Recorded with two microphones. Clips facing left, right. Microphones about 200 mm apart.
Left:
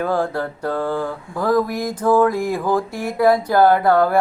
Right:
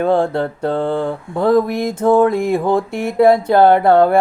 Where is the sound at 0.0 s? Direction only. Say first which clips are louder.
Right 5 dB; 25° right (ahead or behind).